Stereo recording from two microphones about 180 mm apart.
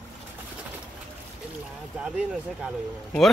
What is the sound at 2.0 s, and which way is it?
Speech, 5° right (ahead or behind).